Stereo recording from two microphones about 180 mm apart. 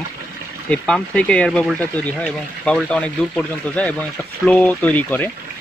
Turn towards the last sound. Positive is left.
turn(degrees=10)  # may be behind; listen again after turning